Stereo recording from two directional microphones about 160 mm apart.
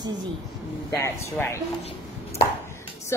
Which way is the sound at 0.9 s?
20° left (ahead or behind).